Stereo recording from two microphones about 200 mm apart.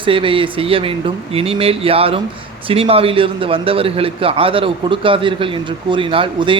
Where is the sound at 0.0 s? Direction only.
25° right (ahead or behind).